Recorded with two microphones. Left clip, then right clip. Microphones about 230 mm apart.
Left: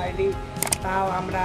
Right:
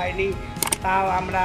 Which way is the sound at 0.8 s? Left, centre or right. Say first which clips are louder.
Right 4 dB; centre.